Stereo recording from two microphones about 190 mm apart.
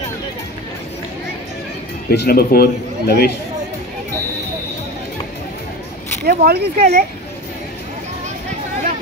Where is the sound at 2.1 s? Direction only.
55° left (ahead or behind).